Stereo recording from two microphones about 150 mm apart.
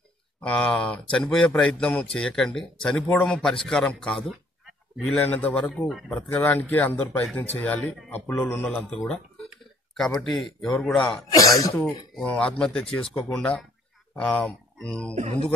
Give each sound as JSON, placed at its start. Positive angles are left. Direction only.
{"t": 0.4, "sound": "a man's voice", "side_deg": 5}
{"t": 11.3, "sound": "speech", "side_deg": 20}
{"t": 12.2, "sound": "speech", "side_deg": 10}